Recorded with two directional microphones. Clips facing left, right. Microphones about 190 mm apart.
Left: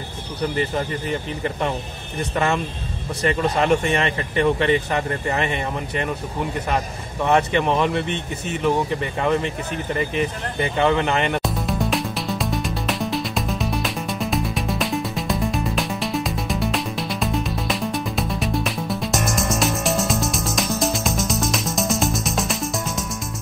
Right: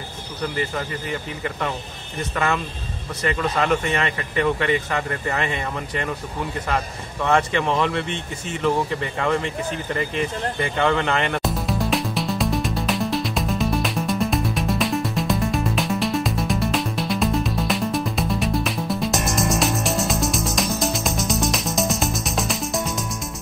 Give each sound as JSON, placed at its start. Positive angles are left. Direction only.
{"t": 2.3, "sound": "speech", "side_deg": 25}
{"t": 7.2, "sound": "speech", "side_deg": 20}
{"t": 10.6, "sound": "speech", "side_deg": 15}
{"t": 11.4, "sound": "music", "side_deg": 0}